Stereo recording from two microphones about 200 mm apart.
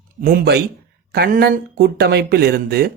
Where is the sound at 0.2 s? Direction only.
45° right (ahead or behind).